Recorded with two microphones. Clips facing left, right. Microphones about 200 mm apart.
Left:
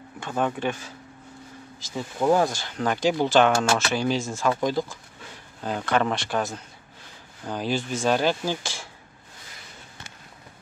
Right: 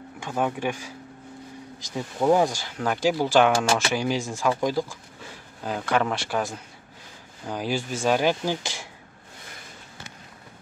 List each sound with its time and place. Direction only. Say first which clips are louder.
0.2 s speech: even; 10° right (ahead or behind)